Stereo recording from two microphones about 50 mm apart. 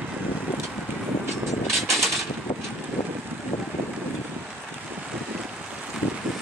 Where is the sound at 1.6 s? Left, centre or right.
Centre.